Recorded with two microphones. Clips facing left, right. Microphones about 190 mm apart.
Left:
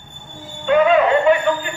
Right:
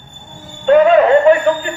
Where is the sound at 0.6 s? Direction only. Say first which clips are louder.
Right 5 dB; 40° right (ahead or behind).